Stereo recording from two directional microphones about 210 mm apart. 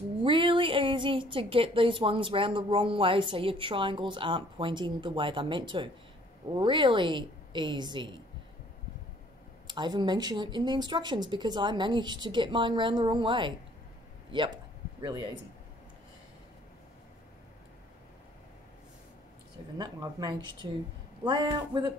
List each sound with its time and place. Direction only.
0.2 s a sound: 25° right (ahead or behind)
1.3 s speech: 25° right (ahead or behind)
9.7 s speech: 20° right (ahead or behind)
19.8 s speech: 20° right (ahead or behind)